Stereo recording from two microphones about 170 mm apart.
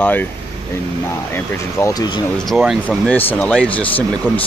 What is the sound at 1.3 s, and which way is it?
Speech, 15° left (ahead or behind).